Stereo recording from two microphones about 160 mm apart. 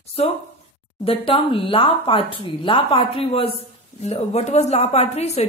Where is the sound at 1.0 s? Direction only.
35° left (ahead or behind).